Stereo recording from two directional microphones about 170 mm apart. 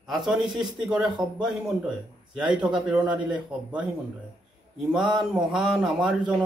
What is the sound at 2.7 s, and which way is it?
Speech, 5° right (ahead or behind).